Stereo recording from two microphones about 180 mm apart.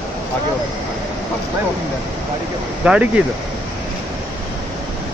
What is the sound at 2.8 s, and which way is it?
Speech, 5° right (ahead or behind).